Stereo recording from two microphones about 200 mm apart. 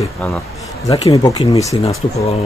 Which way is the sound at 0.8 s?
15° left (ahead or behind).